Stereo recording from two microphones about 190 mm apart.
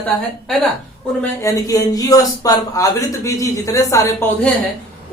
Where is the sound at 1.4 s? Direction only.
15° left (ahead or behind).